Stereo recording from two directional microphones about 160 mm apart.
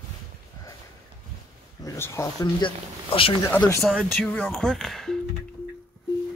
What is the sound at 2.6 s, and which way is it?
Speech, 35° left (ahead or behind).